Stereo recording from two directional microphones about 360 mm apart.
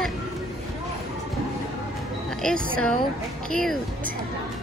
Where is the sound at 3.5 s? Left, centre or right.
Centre.